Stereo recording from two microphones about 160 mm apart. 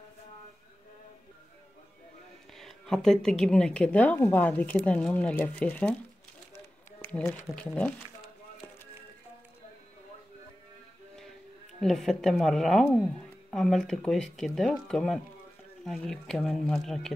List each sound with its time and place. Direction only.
2.5 s a woman's voice: 5° left (ahead or behind)
7.0 s speech: 10° left (ahead or behind)
11.8 s speech: centre (ahead or behind)